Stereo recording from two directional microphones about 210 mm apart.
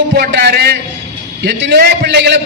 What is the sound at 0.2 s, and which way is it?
A man's voice, 50° right (ahead or behind).